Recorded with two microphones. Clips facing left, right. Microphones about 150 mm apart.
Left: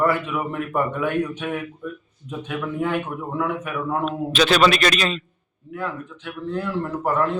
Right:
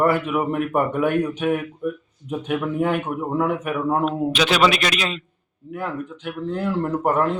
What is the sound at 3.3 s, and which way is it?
Speech, 45° right (ahead or behind).